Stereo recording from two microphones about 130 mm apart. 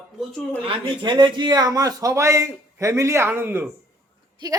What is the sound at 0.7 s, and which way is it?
A man's voice, 35° right (ahead or behind).